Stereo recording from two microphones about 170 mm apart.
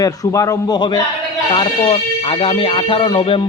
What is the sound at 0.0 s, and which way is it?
A man's voice, 20° left (ahead or behind).